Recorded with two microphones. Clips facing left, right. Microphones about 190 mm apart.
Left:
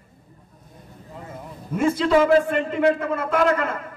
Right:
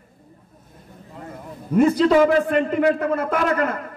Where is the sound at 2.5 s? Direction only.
40° right (ahead or behind).